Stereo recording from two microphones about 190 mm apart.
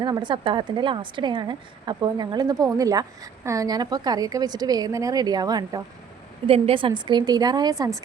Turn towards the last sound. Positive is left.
turn(degrees=-20)  # may be behind; listen again after turning